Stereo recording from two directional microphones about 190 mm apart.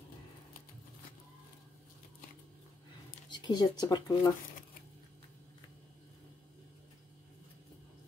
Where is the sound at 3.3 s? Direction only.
25° left (ahead or behind).